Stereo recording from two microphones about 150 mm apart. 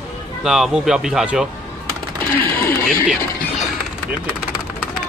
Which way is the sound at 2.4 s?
15° left (ahead or behind).